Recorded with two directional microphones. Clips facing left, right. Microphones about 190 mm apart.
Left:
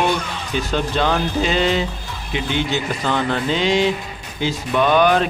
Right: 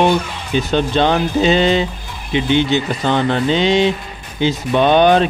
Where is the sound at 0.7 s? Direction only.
25° right (ahead or behind).